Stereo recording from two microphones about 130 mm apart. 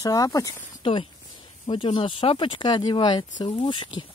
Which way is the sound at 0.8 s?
40° left (ahead or behind).